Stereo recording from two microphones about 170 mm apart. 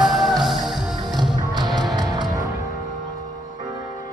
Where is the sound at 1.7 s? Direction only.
Centre (ahead or behind).